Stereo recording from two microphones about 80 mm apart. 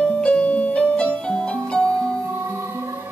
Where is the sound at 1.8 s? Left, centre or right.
Right.